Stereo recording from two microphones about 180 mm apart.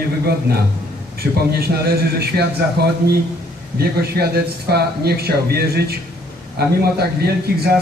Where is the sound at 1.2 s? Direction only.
60° right (ahead or behind).